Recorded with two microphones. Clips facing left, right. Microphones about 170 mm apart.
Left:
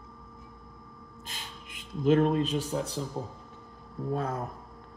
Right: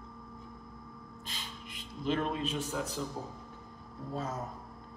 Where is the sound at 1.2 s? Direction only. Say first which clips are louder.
Left 1 dB; 50° left (ahead or behind); by 3.0 s 30° left (ahead or behind).